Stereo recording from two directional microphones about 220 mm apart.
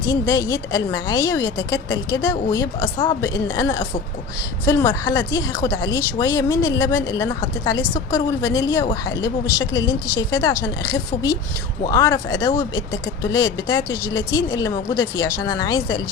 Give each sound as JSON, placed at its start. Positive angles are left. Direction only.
{"t": 0.1, "sound": "a woman's voice", "side_deg": 20}
{"t": 11.8, "sound": "a woman's voice", "side_deg": 15}